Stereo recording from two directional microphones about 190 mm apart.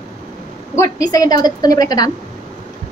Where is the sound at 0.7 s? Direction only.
20° left (ahead or behind).